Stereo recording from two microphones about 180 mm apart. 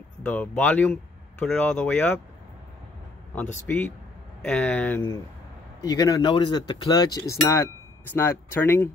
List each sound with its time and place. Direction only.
0.2 s speech: 10° left (ahead or behind)
3.6 s speech: 10° left (ahead or behind)